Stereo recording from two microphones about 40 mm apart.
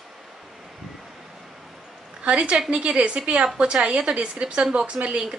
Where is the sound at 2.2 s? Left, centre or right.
Right.